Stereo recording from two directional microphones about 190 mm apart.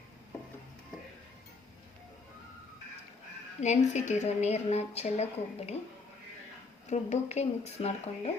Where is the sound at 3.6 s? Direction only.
40° left (ahead or behind).